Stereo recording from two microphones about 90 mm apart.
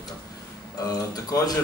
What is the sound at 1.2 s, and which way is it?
Speech, 45° left (ahead or behind).